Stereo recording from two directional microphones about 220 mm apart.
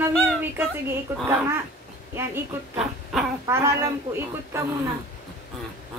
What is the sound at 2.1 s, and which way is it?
A woman's voice, 10° right (ahead or behind).